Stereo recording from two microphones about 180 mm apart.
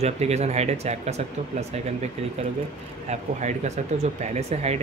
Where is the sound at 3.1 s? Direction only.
40° right (ahead or behind).